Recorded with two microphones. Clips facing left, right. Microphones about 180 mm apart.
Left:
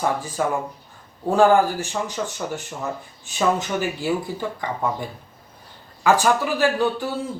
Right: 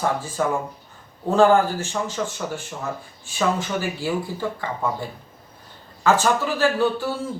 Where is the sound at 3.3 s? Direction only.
20° left (ahead or behind).